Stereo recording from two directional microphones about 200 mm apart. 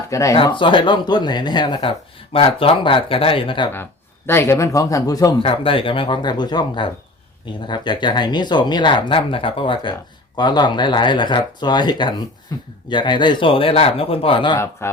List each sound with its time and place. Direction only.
0.1 s speech: 15° left (ahead or behind)
4.3 s speech: 10° left (ahead or behind)
14.8 s speech: 10° left (ahead or behind)